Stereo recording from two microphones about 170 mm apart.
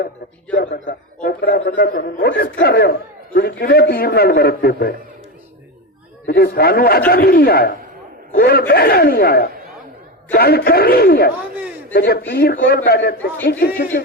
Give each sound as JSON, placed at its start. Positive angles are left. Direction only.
{"t": 0.9, "sound": "a man's voice", "side_deg": 65}
{"t": 6.2, "sound": "a man's voice", "side_deg": 70}